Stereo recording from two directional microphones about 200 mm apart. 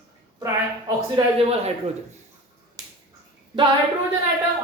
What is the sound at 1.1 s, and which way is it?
Speech, 30° right (ahead or behind).